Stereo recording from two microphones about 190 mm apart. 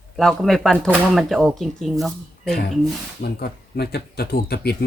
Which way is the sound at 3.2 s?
55° left (ahead or behind).